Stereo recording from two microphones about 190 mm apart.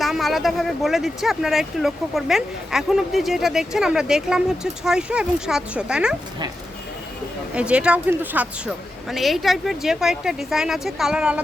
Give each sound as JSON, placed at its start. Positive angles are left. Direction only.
{"t": 0.0, "sound": "speech", "side_deg": 0}
{"t": 7.5, "sound": "speech", "side_deg": -5}